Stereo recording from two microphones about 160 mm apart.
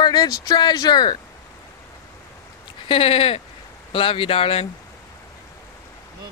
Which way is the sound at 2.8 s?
35° left (ahead or behind).